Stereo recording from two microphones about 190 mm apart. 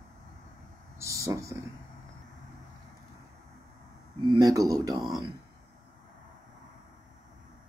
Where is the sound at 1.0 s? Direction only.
15° right (ahead or behind).